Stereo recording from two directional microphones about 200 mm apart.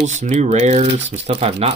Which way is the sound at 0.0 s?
35° right (ahead or behind).